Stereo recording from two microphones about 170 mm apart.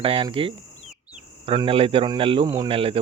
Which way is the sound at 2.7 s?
35° right (ahead or behind).